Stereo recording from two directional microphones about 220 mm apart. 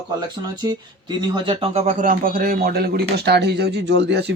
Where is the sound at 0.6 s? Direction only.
20° right (ahead or behind).